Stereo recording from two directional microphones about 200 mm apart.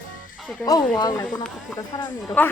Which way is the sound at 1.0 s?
20° left (ahead or behind).